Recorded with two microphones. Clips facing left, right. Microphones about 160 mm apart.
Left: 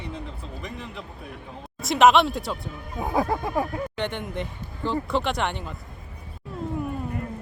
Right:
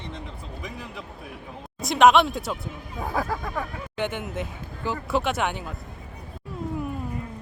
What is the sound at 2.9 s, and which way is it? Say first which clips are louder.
Speech: left 4 dB; 15° left (ahead or behind).